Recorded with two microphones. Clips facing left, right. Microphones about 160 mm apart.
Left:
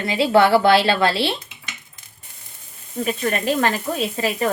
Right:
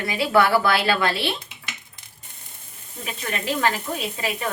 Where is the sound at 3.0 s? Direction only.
45° left (ahead or behind).